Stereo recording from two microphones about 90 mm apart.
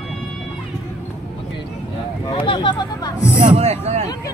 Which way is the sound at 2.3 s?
65° left (ahead or behind).